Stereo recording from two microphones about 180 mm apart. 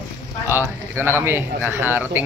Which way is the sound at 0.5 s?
15° right (ahead or behind).